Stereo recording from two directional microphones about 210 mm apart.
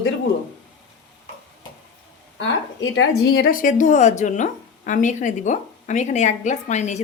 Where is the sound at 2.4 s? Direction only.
65° left (ahead or behind).